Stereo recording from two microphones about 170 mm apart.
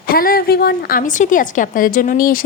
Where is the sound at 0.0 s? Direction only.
60° left (ahead or behind).